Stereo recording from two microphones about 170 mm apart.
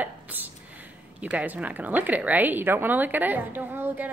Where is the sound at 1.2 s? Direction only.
10° right (ahead or behind).